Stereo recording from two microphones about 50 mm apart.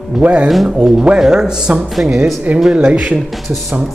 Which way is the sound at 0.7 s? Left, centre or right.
Centre.